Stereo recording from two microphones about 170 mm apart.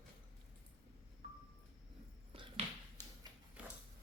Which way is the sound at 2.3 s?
35° right (ahead or behind).